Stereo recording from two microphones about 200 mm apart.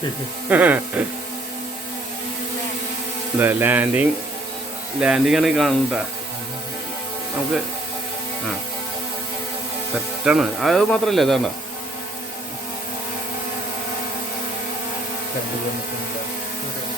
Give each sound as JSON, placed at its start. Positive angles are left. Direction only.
{"t": 0.5, "sound": "speech", "side_deg": -10}
{"t": 3.3, "sound": "speech", "side_deg": -10}
{"t": 10.2, "sound": "speech", "side_deg": 0}